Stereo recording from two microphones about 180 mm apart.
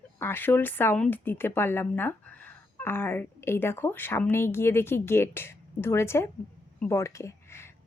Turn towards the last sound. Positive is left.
turn(degrees=15)  # may be behind; listen again after turning